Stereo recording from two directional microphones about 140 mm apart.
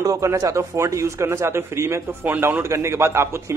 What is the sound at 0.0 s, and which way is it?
Speech, 25° right (ahead or behind).